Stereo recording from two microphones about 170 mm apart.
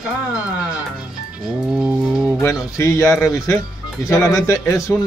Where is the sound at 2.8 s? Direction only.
15° left (ahead or behind).